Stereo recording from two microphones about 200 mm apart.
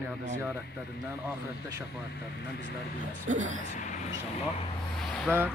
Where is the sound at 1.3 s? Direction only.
15° right (ahead or behind).